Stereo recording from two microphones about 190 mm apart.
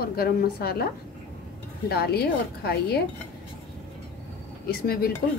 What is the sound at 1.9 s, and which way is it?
A woman's voice, 55° left (ahead or behind).